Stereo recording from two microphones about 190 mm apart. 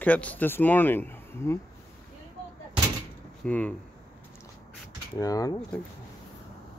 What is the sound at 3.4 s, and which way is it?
Speech, 5° left (ahead or behind).